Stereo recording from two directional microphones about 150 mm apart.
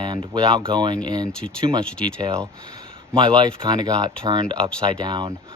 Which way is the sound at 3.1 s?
30° right (ahead or behind).